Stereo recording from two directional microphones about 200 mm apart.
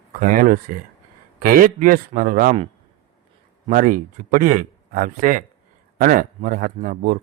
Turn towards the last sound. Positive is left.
turn(degrees=-45)  # may be behind; listen again after turning